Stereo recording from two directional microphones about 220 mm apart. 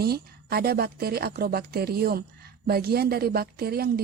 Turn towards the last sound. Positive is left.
turn(degrees=-45)  # may be behind; listen again after turning